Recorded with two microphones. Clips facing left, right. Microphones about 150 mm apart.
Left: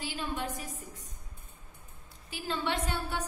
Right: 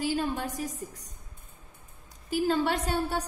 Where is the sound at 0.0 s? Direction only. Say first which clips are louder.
Right 7 dB; 40° right (ahead or behind).